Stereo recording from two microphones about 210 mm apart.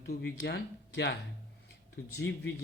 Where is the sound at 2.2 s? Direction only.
55° left (ahead or behind).